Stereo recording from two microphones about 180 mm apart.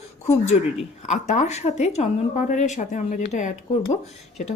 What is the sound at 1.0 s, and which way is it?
A woman's voice, 40° left (ahead or behind).